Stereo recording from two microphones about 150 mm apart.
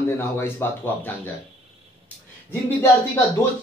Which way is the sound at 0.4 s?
15° left (ahead or behind).